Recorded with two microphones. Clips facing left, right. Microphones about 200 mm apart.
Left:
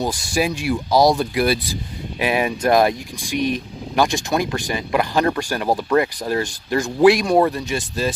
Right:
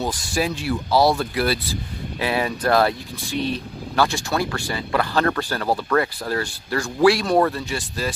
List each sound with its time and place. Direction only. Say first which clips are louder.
0.0 s speech: left 3 dB; 10° left (ahead or behind)